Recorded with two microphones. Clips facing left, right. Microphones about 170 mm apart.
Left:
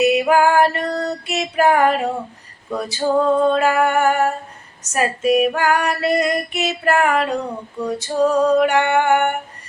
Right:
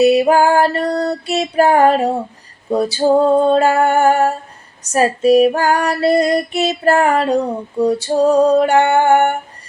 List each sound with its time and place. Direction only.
0.0 s female singing: 30° right (ahead or behind)